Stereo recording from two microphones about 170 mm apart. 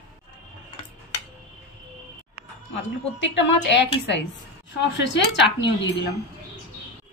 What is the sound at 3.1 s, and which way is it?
Speech, 90° left.